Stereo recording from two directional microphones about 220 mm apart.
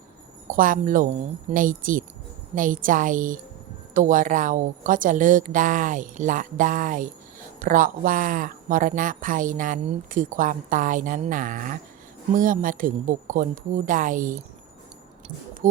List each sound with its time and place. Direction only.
0.4 s speech: 40° right (ahead or behind)
15.6 s speech: 35° right (ahead or behind)